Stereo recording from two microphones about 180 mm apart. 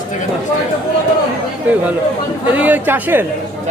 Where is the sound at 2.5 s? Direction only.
10° right (ahead or behind).